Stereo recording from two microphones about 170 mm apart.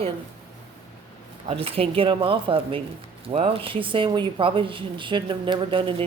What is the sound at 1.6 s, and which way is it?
Speech, 35° right (ahead or behind).